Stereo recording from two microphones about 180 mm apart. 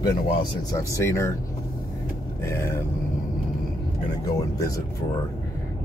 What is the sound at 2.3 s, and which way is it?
Speech, 15° left (ahead or behind).